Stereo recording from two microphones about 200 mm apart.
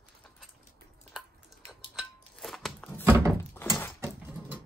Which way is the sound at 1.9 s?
Centre (ahead or behind).